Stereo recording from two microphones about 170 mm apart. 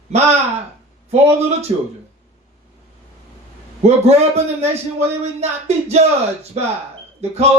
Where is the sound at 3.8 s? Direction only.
40° right (ahead or behind).